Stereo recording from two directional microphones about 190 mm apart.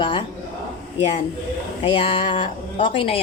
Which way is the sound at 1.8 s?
30° left (ahead or behind).